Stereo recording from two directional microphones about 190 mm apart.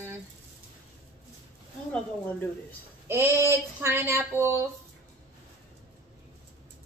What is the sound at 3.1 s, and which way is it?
Speech, 15° right (ahead or behind).